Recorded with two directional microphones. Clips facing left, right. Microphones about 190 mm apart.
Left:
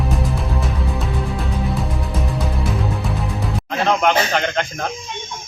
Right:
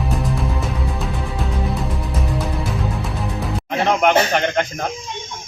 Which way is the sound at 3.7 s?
15° right (ahead or behind).